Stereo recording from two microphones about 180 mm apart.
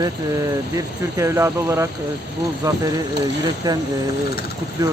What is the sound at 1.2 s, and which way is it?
Speech, 15° right (ahead or behind).